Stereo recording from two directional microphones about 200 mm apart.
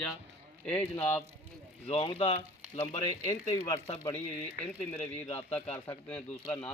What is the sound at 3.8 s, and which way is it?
Speech, 25° left (ahead or behind).